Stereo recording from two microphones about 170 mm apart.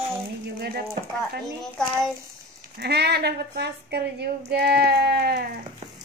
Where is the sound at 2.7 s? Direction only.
75° right (ahead or behind).